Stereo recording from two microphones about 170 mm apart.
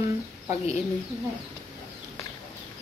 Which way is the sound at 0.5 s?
40° left (ahead or behind).